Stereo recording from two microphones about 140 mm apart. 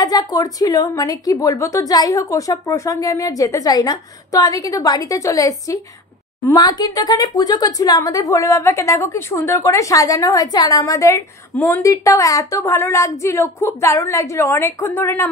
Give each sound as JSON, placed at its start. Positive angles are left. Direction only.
{"t": 0.0, "sound": "a woman's voice", "side_deg": 25}